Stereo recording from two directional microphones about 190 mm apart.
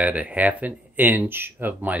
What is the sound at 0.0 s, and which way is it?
Speech, 5° right (ahead or behind).